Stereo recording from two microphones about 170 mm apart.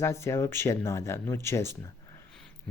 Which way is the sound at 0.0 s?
15° left (ahead or behind).